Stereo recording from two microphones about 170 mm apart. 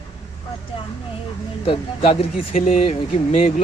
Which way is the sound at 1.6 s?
35° left (ahead or behind).